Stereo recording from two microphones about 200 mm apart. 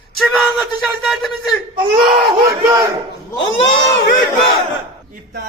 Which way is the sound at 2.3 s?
15° right (ahead or behind).